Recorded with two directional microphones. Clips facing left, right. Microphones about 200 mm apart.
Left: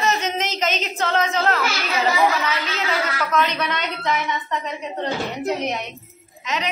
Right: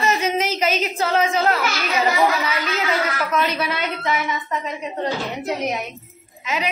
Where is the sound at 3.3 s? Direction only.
10° right (ahead or behind).